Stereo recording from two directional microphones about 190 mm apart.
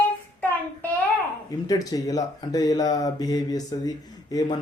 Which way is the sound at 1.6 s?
20° left (ahead or behind).